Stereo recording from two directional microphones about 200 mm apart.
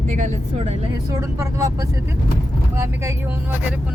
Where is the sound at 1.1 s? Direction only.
15° right (ahead or behind).